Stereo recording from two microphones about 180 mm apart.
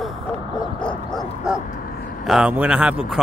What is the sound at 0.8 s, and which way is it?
Bow-wow, centre (ahead or behind).